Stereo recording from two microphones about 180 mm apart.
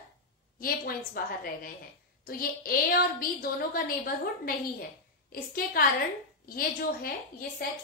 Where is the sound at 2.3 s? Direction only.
55° left (ahead or behind).